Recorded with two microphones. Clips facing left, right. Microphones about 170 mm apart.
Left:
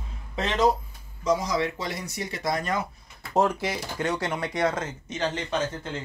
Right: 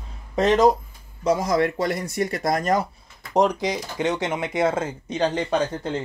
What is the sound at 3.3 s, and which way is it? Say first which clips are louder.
Speech: right 4 dB; 15° right (ahead or behind).